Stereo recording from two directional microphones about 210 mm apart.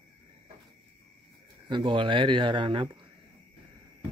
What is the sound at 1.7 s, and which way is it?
Speech, 20° right (ahead or behind).